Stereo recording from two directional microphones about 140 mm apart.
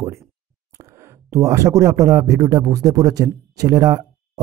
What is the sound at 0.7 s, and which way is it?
Speech, 20° right (ahead or behind).